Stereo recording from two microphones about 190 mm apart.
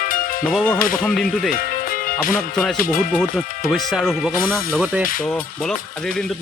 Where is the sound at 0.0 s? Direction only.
45° left (ahead or behind).